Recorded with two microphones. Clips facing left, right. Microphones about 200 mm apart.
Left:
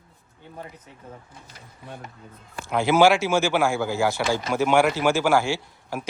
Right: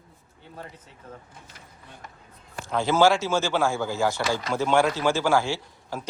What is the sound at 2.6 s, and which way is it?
Speech, 10° left (ahead or behind).